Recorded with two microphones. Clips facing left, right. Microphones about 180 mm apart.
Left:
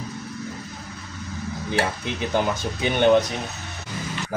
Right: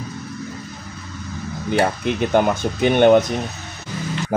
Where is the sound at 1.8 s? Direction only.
60° right (ahead or behind).